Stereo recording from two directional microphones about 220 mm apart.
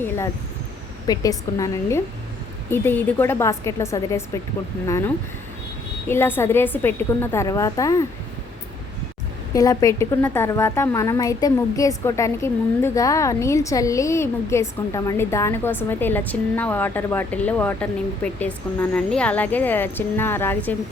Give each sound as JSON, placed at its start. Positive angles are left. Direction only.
{"t": 1.0, "sound": "a woman's voice", "side_deg": 15}
{"t": 9.6, "sound": "a woman's voice", "side_deg": 15}